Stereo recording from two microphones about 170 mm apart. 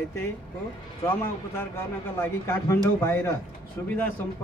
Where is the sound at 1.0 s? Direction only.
15° left (ahead or behind).